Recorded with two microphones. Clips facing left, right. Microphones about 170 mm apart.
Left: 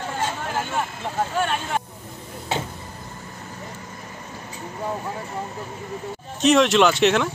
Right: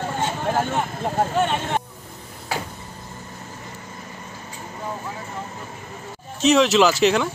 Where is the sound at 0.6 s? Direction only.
40° right (ahead or behind).